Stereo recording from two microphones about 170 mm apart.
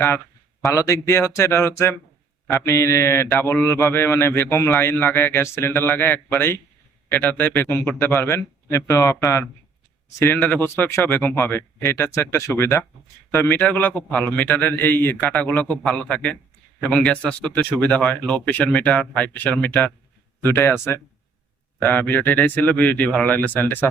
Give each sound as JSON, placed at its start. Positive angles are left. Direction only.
{"t": 0.6, "sound": "a man's voice", "side_deg": 15}
{"t": 21.8, "sound": "a man's voice", "side_deg": 10}